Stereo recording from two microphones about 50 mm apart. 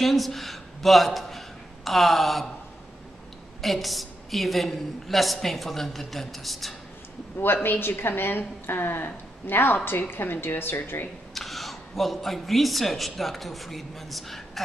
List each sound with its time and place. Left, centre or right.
0.0 s a woman's voice: centre
3.6 s a woman's voice: centre
7.3 s a woman's voice: left
11.3 s speech: centre